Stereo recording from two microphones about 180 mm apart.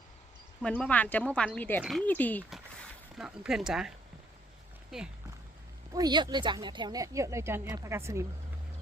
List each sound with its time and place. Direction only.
0.6 s speech: 5° left (ahead or behind)
1.8 s speech: centre (ahead or behind)
3.2 s speech: 5° right (ahead or behind)
5.9 s a woman's voice: 20° right (ahead or behind)